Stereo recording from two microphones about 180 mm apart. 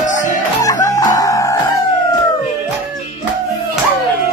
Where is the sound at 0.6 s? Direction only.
20° left (ahead or behind).